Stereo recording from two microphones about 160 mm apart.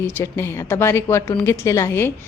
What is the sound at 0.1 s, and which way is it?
A woman's voice, 15° left (ahead or behind).